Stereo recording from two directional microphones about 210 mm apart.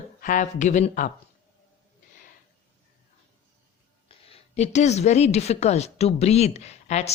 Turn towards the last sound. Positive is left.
turn(degrees=30)  # may be behind; listen again after turning